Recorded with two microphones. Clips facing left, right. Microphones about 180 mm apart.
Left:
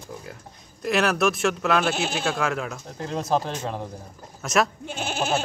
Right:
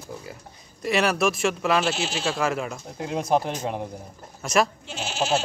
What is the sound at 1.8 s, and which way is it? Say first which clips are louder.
Goat: left 1 dB; 55° left (ahead or behind).